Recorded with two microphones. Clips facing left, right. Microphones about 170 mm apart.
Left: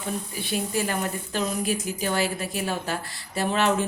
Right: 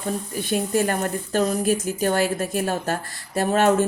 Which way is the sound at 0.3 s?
50° right (ahead or behind).